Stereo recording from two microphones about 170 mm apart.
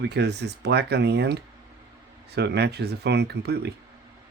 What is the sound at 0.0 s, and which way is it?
Speech, 80° right.